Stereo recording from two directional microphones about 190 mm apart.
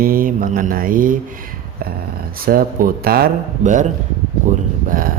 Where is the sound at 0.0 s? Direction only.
50° right (ahead or behind).